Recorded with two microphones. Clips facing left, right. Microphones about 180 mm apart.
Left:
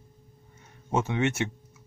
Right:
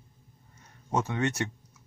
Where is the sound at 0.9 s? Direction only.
20° left (ahead or behind).